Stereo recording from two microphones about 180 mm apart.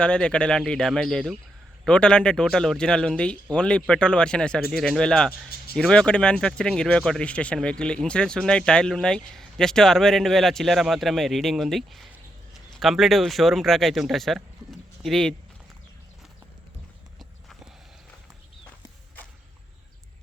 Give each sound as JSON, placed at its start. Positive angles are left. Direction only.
{"t": 0.0, "sound": "speech", "side_deg": 5}